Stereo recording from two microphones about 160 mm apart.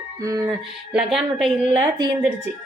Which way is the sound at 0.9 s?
Centre (ahead or behind).